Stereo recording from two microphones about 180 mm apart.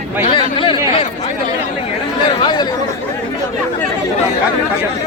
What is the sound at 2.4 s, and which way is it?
Speech, 25° left (ahead or behind).